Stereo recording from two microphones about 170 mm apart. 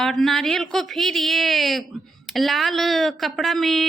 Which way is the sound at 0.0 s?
Centre (ahead or behind).